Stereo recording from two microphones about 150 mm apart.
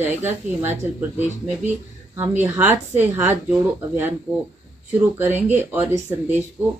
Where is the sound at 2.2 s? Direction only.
15° right (ahead or behind).